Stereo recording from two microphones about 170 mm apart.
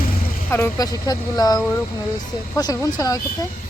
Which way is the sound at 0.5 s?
20° left (ahead or behind).